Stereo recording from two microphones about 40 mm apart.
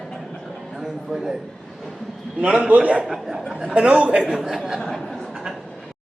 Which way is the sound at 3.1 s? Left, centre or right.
Centre.